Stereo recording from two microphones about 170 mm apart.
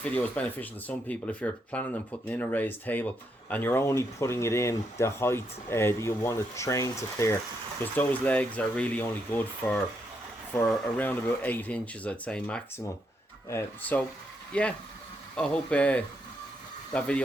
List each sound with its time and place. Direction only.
0.0 s speech: 10° left (ahead or behind)